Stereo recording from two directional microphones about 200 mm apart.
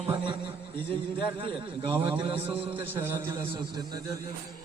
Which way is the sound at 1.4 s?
25° right (ahead or behind).